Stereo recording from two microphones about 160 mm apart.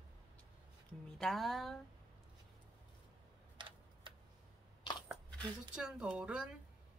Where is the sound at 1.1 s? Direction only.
Centre (ahead or behind).